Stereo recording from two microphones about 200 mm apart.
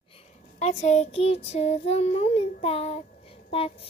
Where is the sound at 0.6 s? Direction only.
35° left (ahead or behind).